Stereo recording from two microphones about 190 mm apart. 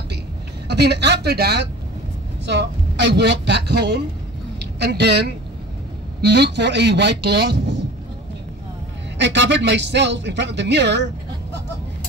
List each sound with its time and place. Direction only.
0.7 s speech: 60° right (ahead or behind)
9.2 s speech: 70° right (ahead or behind)